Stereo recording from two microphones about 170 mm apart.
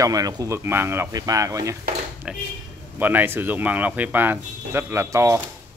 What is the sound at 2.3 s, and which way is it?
Speech, 5° right (ahead or behind).